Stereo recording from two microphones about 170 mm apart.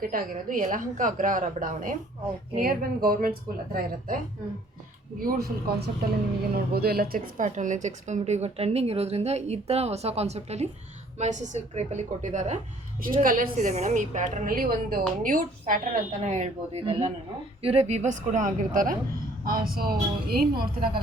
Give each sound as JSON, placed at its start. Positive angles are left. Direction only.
{"t": 0.0, "sound": "a woman's voice", "side_deg": -55}
{"t": 5.2, "sound": "a woman's voice", "side_deg": -65}